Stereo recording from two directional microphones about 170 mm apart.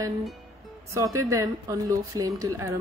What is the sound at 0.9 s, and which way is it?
A woman's voice, 20° right (ahead or behind).